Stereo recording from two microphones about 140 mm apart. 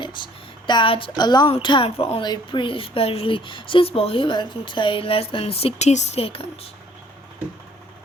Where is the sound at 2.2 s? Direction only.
35° left (ahead or behind).